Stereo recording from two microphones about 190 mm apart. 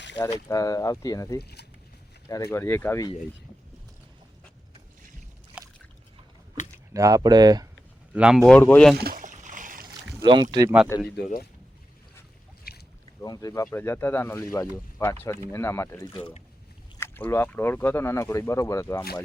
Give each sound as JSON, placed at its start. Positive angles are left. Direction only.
{"t": 0.4, "sound": "speech", "side_deg": 20}
{"t": 1.4, "sound": "speech", "side_deg": 60}
{"t": 2.3, "sound": "speech", "side_deg": 15}
{"t": 5.5, "sound": "boat", "side_deg": -5}
{"t": 6.9, "sound": "speech", "side_deg": -20}
{"t": 8.1, "sound": "speech", "side_deg": -5}
{"t": 8.4, "sound": "speech", "side_deg": 10}
{"t": 9.0, "sound": "a sound", "side_deg": -45}
{"t": 10.2, "sound": "speech", "side_deg": -25}
{"t": 10.9, "sound": "speech", "side_deg": 15}
{"t": 13.2, "sound": "speech", "side_deg": 20}